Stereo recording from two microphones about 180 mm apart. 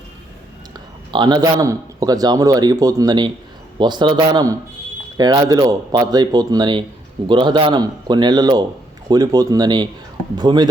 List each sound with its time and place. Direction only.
0.7 s a man's voice: 25° right (ahead or behind)